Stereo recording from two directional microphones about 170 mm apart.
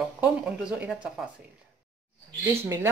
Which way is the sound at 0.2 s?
5° right (ahead or behind).